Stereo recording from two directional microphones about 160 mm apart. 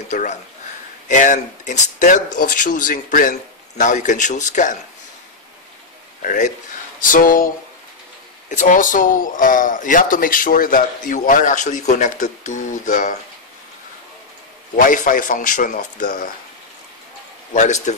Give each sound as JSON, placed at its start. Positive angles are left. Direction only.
{"t": 0.1, "sound": "speech", "side_deg": 45}
{"t": 6.2, "sound": "speech", "side_deg": 55}
{"t": 8.5, "sound": "speech", "side_deg": 55}
{"t": 14.8, "sound": "speech", "side_deg": 55}
{"t": 17.6, "sound": "speech", "side_deg": 50}